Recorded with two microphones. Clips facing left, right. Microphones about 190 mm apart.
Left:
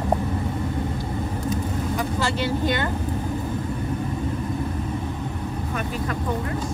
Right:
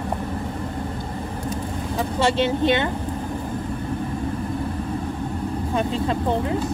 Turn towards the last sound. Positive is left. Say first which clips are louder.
# right 5 dB
turn(degrees=-25)  # may be behind; listen again after turning